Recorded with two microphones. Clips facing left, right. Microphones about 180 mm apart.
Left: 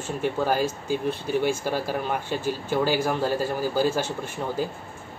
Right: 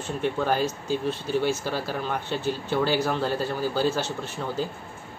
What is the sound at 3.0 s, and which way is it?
Speech, 10° left (ahead or behind).